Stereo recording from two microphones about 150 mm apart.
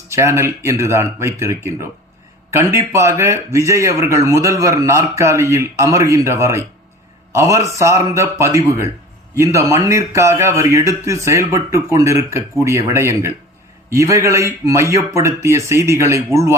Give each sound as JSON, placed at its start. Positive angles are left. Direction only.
{"t": 0.1, "sound": "a man's voice", "side_deg": -20}